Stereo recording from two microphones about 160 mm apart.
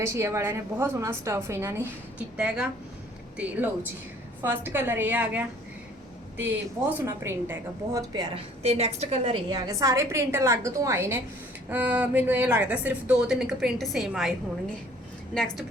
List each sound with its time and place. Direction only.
0.0 s a woman's voice: 15° right (ahead or behind)
7.0 s a woman's voice: 15° right (ahead or behind)
8.1 s a woman's voice: 25° right (ahead or behind)
8.6 s a woman's voice: 40° right (ahead or behind); by 14.3 s centre (ahead or behind)